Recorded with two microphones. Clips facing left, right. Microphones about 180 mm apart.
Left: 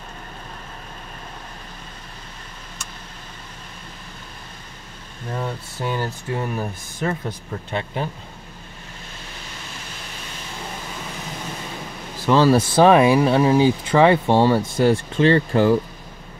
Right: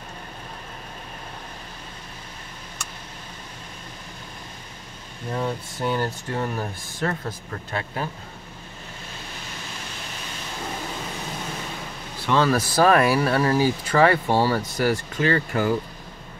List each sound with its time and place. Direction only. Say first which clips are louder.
5.3 s speech: right 1 dB; centre (ahead or behind)
7.7 s speech: left 3 dB; 20° left (ahead or behind)
12.3 s speech: left 5 dB; 30° left (ahead or behind)